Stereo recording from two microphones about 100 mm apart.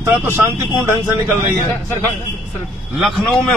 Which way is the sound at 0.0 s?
25° right (ahead or behind).